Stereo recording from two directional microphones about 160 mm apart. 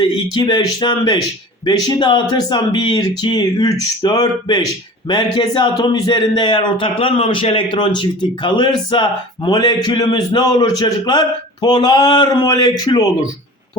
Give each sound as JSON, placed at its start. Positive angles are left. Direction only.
{"t": 0.0, "sound": "speech", "side_deg": 30}